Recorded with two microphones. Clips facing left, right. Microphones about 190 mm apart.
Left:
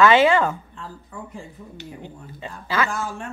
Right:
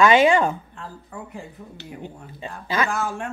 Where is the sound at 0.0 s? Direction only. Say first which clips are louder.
Even; 15° right (ahead or behind).